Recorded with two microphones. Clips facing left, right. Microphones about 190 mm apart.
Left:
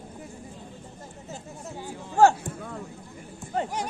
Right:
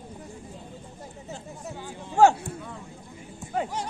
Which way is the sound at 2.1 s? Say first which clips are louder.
Even; 15° right (ahead or behind).